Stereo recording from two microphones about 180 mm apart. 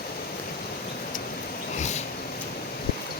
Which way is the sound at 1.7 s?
40° left (ahead or behind).